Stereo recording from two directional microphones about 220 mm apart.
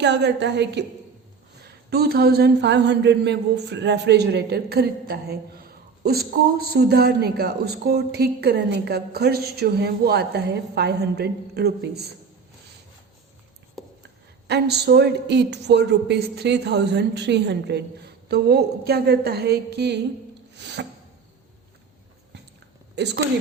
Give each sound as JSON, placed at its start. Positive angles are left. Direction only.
{"t": 0.0, "sound": "speech", "side_deg": -50}
{"t": 14.4, "sound": "speech", "side_deg": -50}
{"t": 20.5, "sound": "a sound", "side_deg": -50}
{"t": 23.0, "sound": "speech", "side_deg": -50}